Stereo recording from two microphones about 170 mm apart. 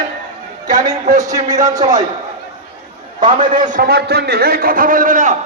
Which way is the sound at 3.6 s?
50° right (ahead or behind).